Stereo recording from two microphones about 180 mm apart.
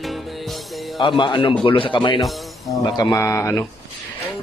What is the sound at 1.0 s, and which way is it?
A man's voice, 25° left (ahead or behind).